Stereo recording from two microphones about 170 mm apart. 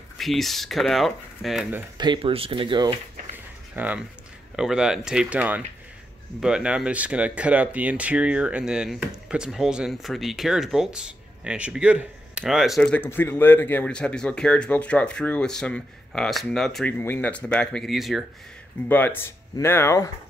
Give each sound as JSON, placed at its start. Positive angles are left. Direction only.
{"t": 0.2, "sound": "speech", "side_deg": 0}
{"t": 2.0, "sound": "speech", "side_deg": -30}
{"t": 3.7, "sound": "speech", "side_deg": -10}
{"t": 18.9, "sound": "speech", "side_deg": 10}